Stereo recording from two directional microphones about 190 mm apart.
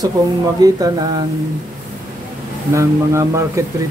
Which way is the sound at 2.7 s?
15° right (ahead or behind).